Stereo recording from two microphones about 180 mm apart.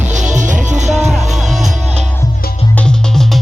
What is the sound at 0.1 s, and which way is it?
Music, 45° right (ahead or behind).